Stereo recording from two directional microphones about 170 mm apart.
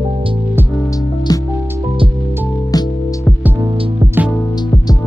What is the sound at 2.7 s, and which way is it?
Music, 20° left (ahead or behind).